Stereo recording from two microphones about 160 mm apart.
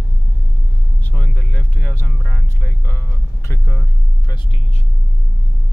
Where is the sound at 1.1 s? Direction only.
10° left (ahead or behind).